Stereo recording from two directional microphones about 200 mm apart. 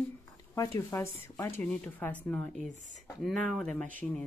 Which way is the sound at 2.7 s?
35° left (ahead or behind).